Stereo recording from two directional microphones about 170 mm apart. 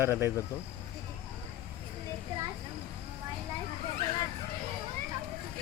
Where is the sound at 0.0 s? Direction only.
15° right (ahead or behind).